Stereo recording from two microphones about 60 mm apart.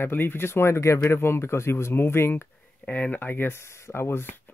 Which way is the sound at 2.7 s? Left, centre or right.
Left.